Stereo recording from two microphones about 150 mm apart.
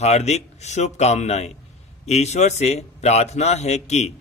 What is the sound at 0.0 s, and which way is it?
Speech, 45° left (ahead or behind).